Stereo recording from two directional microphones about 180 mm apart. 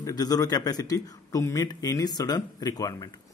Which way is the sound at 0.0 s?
20° left (ahead or behind).